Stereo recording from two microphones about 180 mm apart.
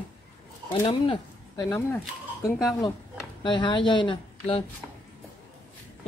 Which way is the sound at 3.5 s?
25° left (ahead or behind).